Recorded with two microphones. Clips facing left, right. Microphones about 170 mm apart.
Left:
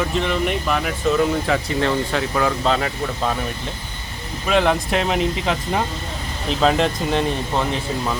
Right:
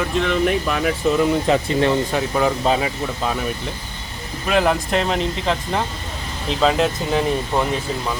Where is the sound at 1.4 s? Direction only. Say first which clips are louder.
Right 3 dB; 20° right (ahead or behind).